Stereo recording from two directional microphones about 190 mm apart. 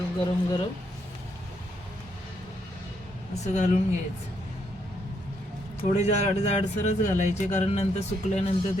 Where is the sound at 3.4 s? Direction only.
40° left (ahead or behind).